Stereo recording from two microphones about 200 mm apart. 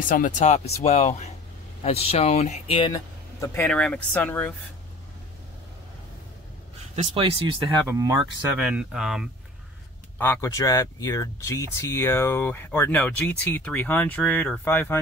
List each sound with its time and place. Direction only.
0.0 s speech: 40° left (ahead or behind)
2.9 s speech: 15° left (ahead or behind)
7.2 s speech: 25° right (ahead or behind)
7.8 s speech: 15° right (ahead or behind)
8.2 s speech: 5° right (ahead or behind)
10.1 s speech: 10° left (ahead or behind)